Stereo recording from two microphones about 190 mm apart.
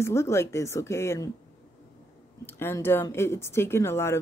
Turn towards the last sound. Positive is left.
turn(degrees=15)  # may be behind; listen again after turning